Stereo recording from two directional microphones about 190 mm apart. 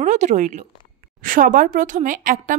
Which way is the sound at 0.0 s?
40° right (ahead or behind).